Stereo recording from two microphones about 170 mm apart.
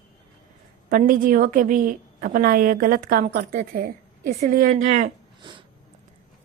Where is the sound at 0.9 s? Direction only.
55° right (ahead or behind).